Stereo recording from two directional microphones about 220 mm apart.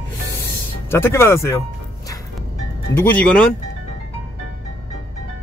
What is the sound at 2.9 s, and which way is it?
Speech, 10° left (ahead or behind).